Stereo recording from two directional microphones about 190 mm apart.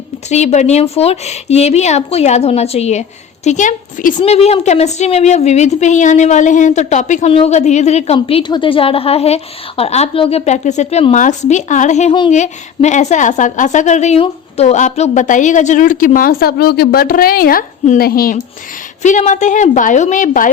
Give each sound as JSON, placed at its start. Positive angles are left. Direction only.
{"t": 0.3, "sound": "a woman's voice", "side_deg": 35}